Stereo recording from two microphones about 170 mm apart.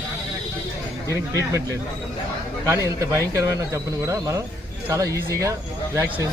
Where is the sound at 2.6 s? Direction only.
20° right (ahead or behind).